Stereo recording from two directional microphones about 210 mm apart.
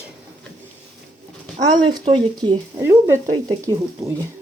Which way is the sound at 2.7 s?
10° right (ahead or behind).